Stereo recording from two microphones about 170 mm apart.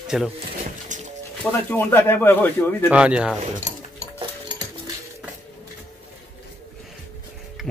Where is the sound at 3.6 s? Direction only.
45° right (ahead or behind).